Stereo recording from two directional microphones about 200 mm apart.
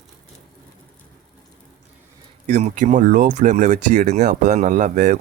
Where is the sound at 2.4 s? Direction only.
35° right (ahead or behind).